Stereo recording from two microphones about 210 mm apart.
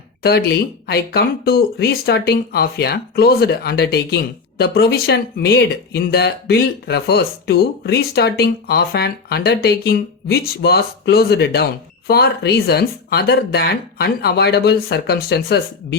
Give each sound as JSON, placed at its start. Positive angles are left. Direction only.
{"t": 0.2, "sound": "speech", "side_deg": 50}